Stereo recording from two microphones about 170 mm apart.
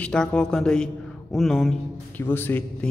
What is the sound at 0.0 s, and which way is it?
A man's voice, 5° left (ahead or behind).